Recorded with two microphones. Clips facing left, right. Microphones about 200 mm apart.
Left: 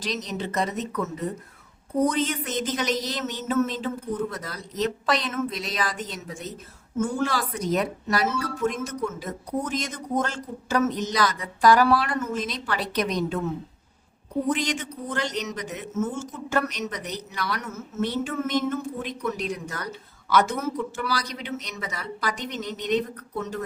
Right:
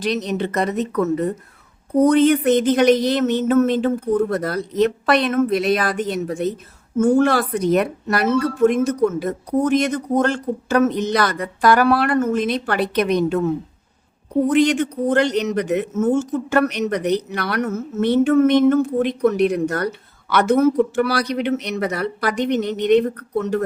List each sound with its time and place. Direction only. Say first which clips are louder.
0.0 s speech: right 9 dB; 60° right (ahead or behind)
14.5 s speech: right 12 dB; 60° right (ahead or behind)